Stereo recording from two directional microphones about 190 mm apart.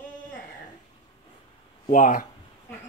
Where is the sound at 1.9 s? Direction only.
45° left (ahead or behind).